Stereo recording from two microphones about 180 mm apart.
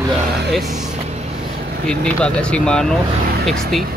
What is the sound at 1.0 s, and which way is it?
Vehicle, 35° right (ahead or behind).